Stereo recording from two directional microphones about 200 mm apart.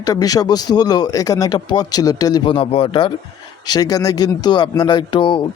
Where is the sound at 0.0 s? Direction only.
15° left (ahead or behind).